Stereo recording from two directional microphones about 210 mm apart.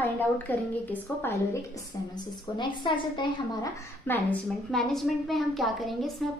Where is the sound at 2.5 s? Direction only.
20° left (ahead or behind).